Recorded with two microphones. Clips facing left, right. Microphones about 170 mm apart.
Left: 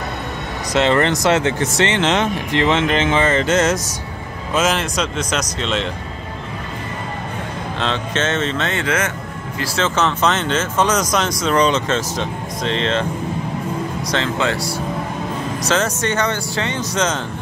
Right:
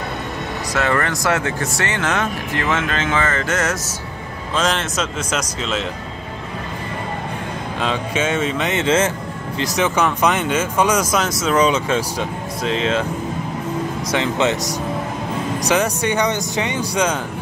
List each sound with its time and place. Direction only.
0.7 s speech: 20° left (ahead or behind)
4.6 s speech: 5° left (ahead or behind)
7.8 s speech: 10° right (ahead or behind); by 9.1 s 25° right (ahead or behind)
9.6 s speech: 15° right (ahead or behind)
14.1 s speech: 20° right (ahead or behind)